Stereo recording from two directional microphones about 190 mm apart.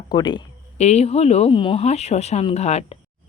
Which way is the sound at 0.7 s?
35° left (ahead or behind).